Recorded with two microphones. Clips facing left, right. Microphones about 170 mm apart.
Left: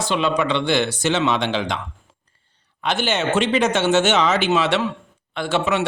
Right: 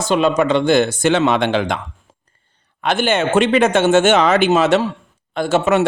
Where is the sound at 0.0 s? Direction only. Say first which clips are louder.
Right 5 dB; 45° right (ahead or behind).